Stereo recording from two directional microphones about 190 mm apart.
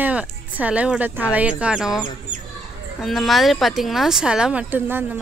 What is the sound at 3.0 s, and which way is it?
Speech, centre (ahead or behind).